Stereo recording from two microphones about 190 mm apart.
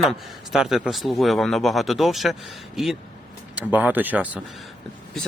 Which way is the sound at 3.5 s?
5° right (ahead or behind).